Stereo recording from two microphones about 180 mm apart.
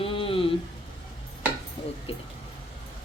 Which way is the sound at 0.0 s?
30° left (ahead or behind).